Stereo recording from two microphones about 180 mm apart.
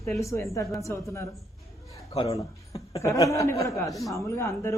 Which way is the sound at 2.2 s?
20° left (ahead or behind).